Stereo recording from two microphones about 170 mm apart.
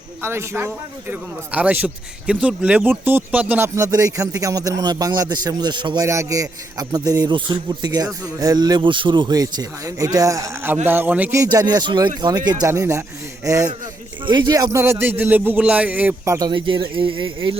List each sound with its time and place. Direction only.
0.2 s speech: 15° right (ahead or behind)
11.4 s speech: 25° right (ahead or behind)